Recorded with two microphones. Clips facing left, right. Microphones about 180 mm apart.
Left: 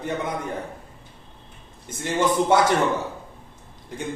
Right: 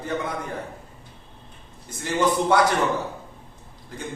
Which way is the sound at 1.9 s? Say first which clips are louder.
Even; 20° left (ahead or behind).